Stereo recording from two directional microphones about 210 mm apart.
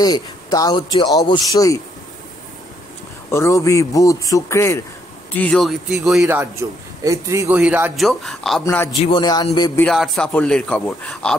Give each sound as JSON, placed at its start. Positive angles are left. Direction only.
{"t": 0.0, "sound": "speech", "side_deg": 20}
{"t": 3.3, "sound": "a man's voice", "side_deg": 15}
{"t": 8.6, "sound": "a man's voice", "side_deg": 10}
{"t": 8.9, "sound": "speech", "side_deg": 25}
{"t": 9.8, "sound": "speech", "side_deg": 0}